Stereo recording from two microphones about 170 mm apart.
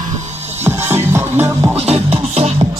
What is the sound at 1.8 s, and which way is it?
Music, 35° right (ahead or behind).